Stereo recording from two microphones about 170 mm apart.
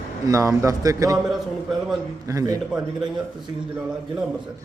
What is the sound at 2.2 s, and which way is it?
Speech, 20° right (ahead or behind).